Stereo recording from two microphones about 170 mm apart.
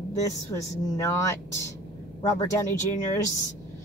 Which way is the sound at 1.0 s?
15° left (ahead or behind).